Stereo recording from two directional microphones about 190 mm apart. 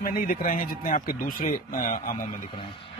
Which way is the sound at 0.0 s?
50° left (ahead or behind).